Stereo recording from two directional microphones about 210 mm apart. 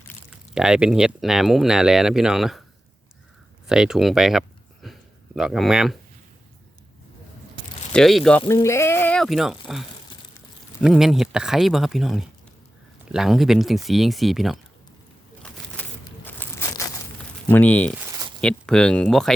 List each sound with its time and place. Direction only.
0.5 s speech: 5° right (ahead or behind)
3.7 s speech: 5° right (ahead or behind)
7.9 s speech: centre (ahead or behind)
15.4 s a sound: 10° left (ahead or behind)
17.5 s speech: 5° left (ahead or behind)
17.9 s a sound: 15° right (ahead or behind)
18.3 s speech: 5° left (ahead or behind)